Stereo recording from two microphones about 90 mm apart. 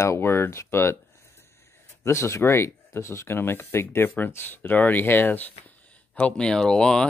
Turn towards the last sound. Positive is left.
turn(degrees=10)  # may be behind; listen again after turning